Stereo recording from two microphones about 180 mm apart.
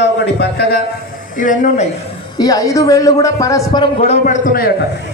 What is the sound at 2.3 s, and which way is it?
A man's voice, 20° left (ahead or behind).